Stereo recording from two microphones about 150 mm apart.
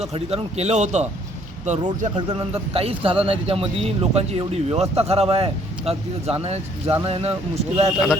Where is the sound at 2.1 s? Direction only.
35° right (ahead or behind).